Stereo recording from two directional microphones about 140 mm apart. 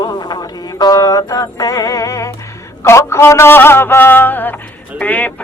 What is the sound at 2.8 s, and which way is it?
A man's voice, 20° left (ahead or behind).